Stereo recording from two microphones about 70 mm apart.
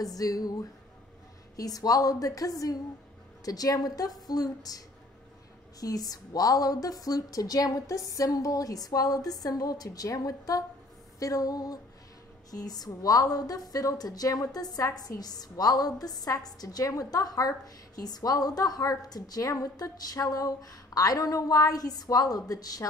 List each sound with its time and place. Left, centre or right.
0.0 s a woman's voice: left
5.8 s a woman's voice: left